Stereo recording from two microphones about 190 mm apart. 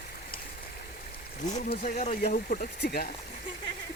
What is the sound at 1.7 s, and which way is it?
Speech, 40° left (ahead or behind).